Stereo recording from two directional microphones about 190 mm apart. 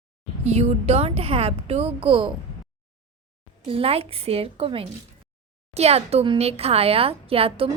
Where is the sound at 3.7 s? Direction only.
30° right (ahead or behind).